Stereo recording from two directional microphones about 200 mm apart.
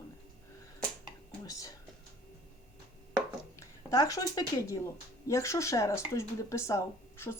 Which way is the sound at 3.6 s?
15° left (ahead or behind).